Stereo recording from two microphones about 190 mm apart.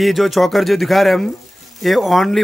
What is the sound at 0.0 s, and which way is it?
Speech, centre (ahead or behind).